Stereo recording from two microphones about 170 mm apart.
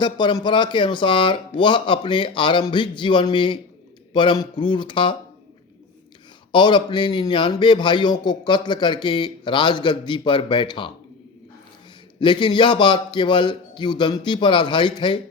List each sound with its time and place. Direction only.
0.0 s a man's voice: 25° left (ahead or behind)
6.5 s a man's voice: 30° left (ahead or behind)
12.2 s a man's voice: 30° left (ahead or behind)